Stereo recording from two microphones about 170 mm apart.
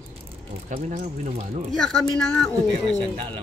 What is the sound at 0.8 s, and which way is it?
Speech, 45° right (ahead or behind).